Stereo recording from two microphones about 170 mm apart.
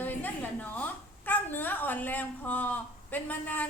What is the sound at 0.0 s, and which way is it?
A woman's voice, 10° left (ahead or behind).